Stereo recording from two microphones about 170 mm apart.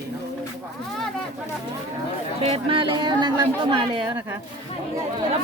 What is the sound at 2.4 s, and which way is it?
Speech, 35° right (ahead or behind).